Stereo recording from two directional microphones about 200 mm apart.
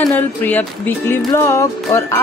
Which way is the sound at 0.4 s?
10° left (ahead or behind).